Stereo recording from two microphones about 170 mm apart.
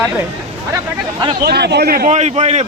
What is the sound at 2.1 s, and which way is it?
Speech, 40° right (ahead or behind).